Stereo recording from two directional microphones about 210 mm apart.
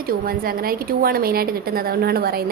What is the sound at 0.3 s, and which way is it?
A woman's voice, 45° right (ahead or behind).